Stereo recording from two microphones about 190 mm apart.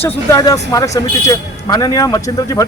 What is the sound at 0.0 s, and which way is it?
Speech, 15° left (ahead or behind).